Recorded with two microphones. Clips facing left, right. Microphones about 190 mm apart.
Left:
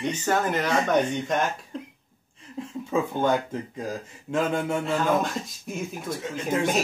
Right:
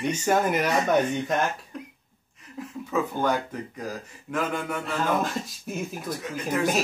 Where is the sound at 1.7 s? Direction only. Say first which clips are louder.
Left 3 dB; 30° left (ahead or behind).